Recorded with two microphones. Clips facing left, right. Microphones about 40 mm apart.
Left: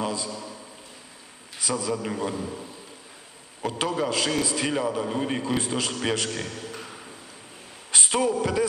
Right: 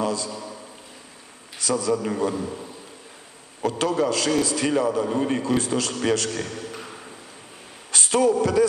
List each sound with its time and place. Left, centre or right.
0.0 s a sound: left
0.3 s a man's voice: centre
1.6 s a man's voice: centre
2.3 s a man's voice: centre
3.6 s a man's voice: centre
6.3 s a sound: centre
7.9 s a man's voice: centre